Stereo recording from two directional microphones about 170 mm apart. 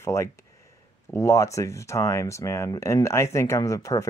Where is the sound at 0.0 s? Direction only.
15° left (ahead or behind).